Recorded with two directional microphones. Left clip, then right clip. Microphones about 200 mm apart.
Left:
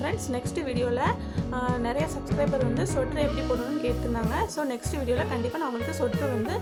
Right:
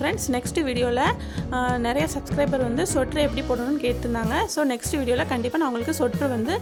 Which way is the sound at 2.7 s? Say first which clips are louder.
Right 4 dB; 50° right (ahead or behind).